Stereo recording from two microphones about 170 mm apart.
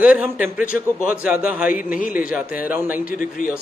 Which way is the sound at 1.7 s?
55° left (ahead or behind).